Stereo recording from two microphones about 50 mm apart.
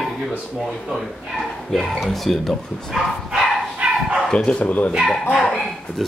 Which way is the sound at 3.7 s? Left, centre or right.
Right.